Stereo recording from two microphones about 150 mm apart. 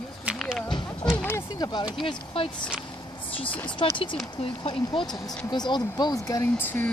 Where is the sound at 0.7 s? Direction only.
30° left (ahead or behind).